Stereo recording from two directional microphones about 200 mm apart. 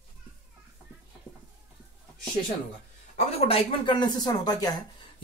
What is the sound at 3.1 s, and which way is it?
Speech, 30° left (ahead or behind).